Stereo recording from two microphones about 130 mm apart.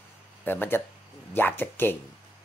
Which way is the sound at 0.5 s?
15° left (ahead or behind).